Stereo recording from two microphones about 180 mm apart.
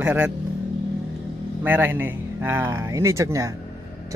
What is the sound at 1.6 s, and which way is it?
A man's voice, 10° right (ahead or behind).